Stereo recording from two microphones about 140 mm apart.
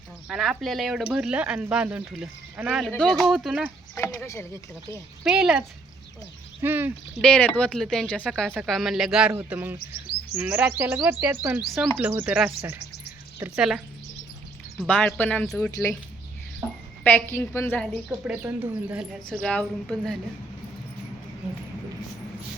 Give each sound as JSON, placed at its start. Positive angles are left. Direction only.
{"t": 0.3, "sound": "speech", "side_deg": 0}
{"t": 3.9, "sound": "speech", "side_deg": 15}
{"t": 5.2, "sound": "speech", "side_deg": -5}
{"t": 7.2, "sound": "speech", "side_deg": 5}
{"t": 9.3, "sound": "speech", "side_deg": -15}
{"t": 14.8, "sound": "speech", "side_deg": 10}
{"t": 17.0, "sound": "speech", "side_deg": 15}
{"t": 18.3, "sound": "speech", "side_deg": -10}
{"t": 19.3, "sound": "speech", "side_deg": 5}